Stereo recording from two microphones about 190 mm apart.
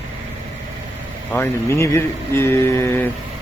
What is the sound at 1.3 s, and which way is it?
Speech, 10° left (ahead or behind).